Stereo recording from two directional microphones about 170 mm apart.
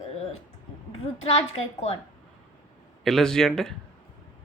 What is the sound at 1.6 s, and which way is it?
Speech, 35° left (ahead or behind).